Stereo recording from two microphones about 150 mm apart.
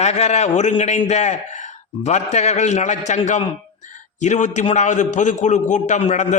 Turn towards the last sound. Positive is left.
turn(degrees=50)  # may be behind; listen again after turning